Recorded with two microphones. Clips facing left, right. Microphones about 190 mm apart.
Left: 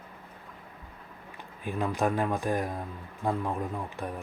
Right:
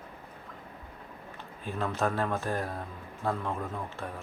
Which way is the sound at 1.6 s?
15° left (ahead or behind).